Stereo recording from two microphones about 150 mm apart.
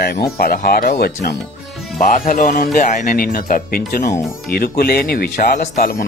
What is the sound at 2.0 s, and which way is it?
Speech, 65° left (ahead or behind).